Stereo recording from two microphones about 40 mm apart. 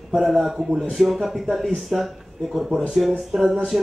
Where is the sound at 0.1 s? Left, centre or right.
Centre.